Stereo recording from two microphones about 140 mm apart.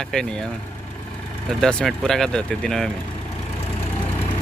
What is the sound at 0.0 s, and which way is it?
Speech, 5° left (ahead or behind).